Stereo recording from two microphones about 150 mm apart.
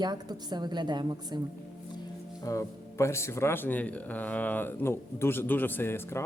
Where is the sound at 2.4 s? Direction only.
20° left (ahead or behind).